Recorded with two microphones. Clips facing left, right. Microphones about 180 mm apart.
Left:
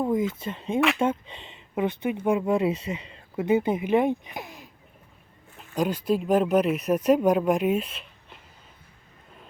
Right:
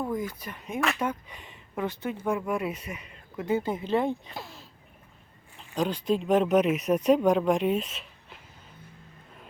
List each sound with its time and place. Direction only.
0.0 s speech: 20° left (ahead or behind); by 8.4 s centre (ahead or behind)